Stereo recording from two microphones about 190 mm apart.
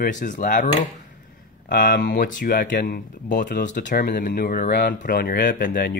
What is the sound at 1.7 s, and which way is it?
Speech, 45° left (ahead or behind).